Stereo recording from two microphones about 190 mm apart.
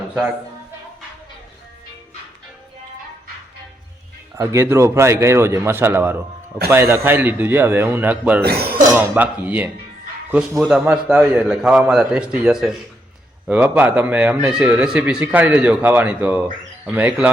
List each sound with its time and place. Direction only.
4.4 s speech: 15° right (ahead or behind)
8.4 s speech: 55° right (ahead or behind)
9.0 s a man's voice: 10° right (ahead or behind)